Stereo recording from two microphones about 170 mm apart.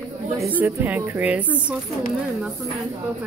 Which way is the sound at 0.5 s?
10° right (ahead or behind).